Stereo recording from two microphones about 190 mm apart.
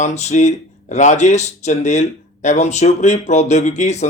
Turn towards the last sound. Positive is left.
turn(degrees=35)  # may be behind; listen again after turning